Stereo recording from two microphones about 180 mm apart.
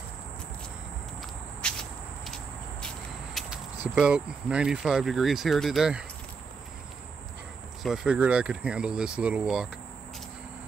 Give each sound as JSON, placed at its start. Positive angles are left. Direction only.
{"t": 1.6, "sound": "insect", "side_deg": 5}
{"t": 3.3, "sound": "speech", "side_deg": -5}
{"t": 7.8, "sound": "speech", "side_deg": -5}